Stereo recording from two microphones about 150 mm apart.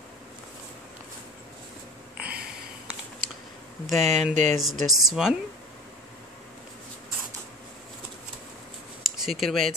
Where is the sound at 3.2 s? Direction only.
70° right (ahead or behind).